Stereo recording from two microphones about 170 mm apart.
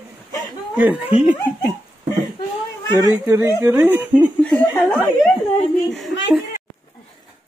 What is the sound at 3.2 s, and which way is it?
Speech, 15° right (ahead or behind).